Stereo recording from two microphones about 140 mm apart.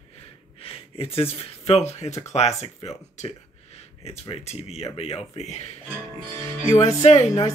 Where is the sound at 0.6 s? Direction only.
40° left (ahead or behind).